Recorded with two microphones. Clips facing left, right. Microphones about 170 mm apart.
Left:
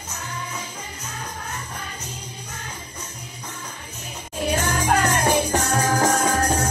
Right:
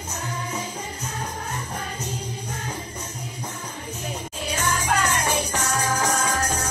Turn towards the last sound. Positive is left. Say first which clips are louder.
# left 4 dB
turn(degrees=40)  # may be behind; listen again after turning